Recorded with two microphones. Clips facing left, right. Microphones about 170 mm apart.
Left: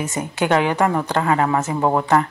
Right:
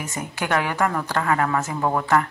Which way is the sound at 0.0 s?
25° left (ahead or behind).